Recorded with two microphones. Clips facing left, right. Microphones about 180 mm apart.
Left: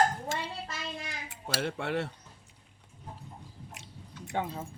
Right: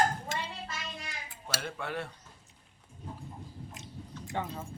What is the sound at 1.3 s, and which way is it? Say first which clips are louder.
Speech: left 6 dB; 70° left (ahead or behind).